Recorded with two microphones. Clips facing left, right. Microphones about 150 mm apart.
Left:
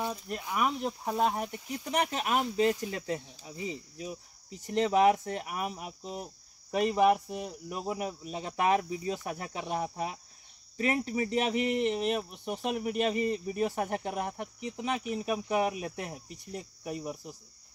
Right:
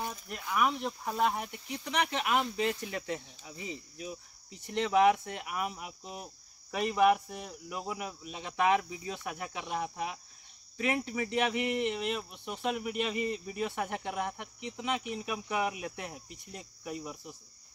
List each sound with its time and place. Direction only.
0.6 s speech: 30° left (ahead or behind)